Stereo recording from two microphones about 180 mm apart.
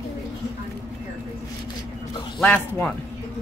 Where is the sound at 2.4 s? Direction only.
5° left (ahead or behind).